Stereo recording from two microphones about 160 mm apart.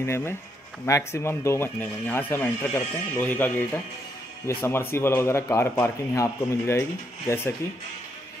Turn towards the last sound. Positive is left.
turn(degrees=15)  # may be behind; listen again after turning